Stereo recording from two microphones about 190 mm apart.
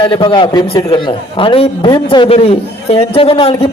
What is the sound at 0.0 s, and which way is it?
A man's voice, 25° left (ahead or behind).